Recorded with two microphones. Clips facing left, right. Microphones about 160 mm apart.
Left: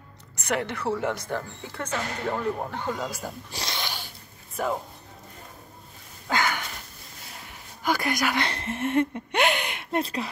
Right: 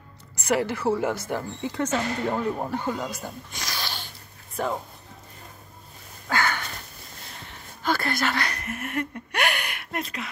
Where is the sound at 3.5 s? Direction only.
25° left (ahead or behind).